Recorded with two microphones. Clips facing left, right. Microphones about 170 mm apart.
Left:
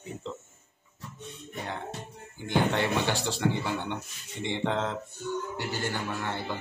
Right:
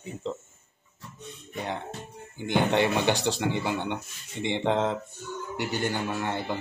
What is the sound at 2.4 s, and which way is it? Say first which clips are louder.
A man's voice: right 3 dB; 20° right (ahead or behind).